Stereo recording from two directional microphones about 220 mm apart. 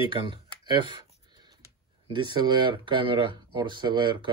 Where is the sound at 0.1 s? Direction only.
20° right (ahead or behind).